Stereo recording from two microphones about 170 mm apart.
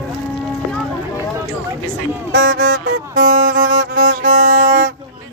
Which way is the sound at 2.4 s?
55° right (ahead or behind).